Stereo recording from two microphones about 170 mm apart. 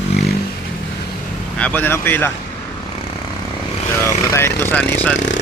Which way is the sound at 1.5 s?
10° left (ahead or behind).